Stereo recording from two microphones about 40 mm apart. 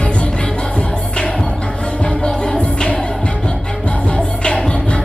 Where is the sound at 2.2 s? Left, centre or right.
Centre.